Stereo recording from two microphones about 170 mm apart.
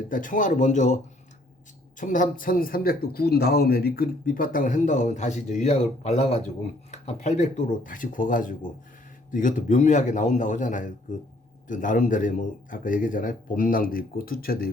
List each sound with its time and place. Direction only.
0.1 s speech: 50° left (ahead or behind)
2.0 s speech: 50° left (ahead or behind)